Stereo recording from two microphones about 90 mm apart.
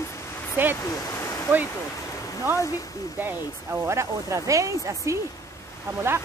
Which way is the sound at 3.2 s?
25° right (ahead or behind).